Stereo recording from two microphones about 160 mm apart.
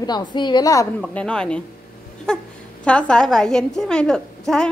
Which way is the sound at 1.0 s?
5° left (ahead or behind).